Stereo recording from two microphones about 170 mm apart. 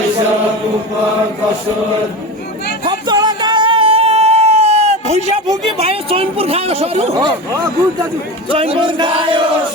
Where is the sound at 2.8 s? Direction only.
25° right (ahead or behind).